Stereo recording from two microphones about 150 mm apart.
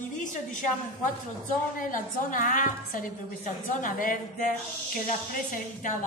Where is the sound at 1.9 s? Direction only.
60° left (ahead or behind).